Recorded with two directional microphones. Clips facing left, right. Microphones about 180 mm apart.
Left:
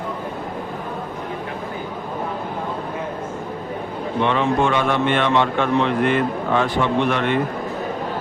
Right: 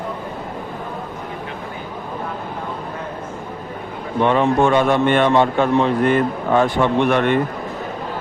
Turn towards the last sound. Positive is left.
turn(degrees=-50)  # may be behind; listen again after turning